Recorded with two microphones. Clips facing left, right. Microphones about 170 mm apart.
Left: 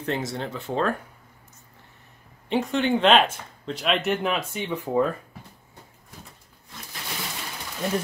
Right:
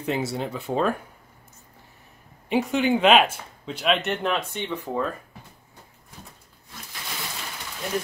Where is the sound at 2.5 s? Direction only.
5° right (ahead or behind).